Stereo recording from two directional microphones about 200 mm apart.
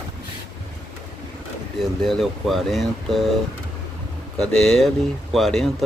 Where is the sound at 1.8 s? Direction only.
Centre (ahead or behind).